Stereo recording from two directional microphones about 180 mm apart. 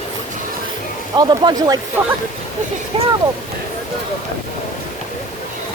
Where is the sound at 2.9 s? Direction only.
30° right (ahead or behind).